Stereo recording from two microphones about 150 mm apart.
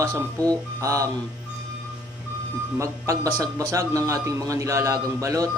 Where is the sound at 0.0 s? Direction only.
25° right (ahead or behind).